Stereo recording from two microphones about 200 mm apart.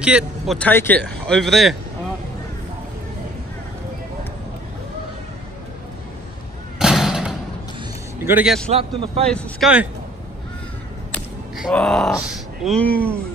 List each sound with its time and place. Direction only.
0.0 s speech: 5° right (ahead or behind)
0.6 s speech: 10° left (ahead or behind)
6.8 s thump: centre (ahead or behind)
8.3 s a man's voice: 10° right (ahead or behind)
8.6 s a man's voice: 30° right (ahead or behind)
9.2 s speech: 5° left (ahead or behind)
11.5 s speech: centre (ahead or behind)